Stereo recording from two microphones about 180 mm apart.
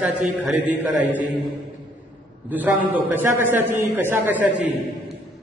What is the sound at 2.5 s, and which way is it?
A man's voice, 10° right (ahead or behind).